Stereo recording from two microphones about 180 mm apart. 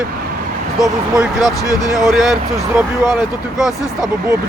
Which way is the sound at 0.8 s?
Centre (ahead or behind).